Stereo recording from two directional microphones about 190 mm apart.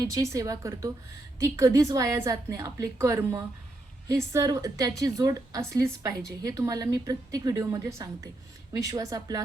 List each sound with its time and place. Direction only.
0.1 s a woman's voice: 15° right (ahead or behind)